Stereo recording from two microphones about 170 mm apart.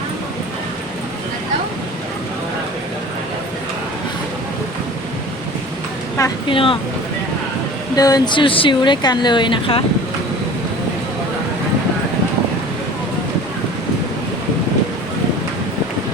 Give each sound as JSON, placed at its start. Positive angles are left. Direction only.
{"t": 6.5, "sound": "speech", "side_deg": 30}
{"t": 7.9, "sound": "speech", "side_deg": 20}